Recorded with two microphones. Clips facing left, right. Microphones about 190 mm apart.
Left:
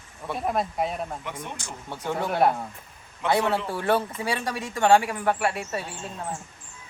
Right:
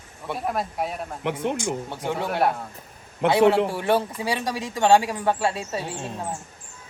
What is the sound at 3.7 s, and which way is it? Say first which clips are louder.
Speech: right 2 dB; 20° right (ahead or behind).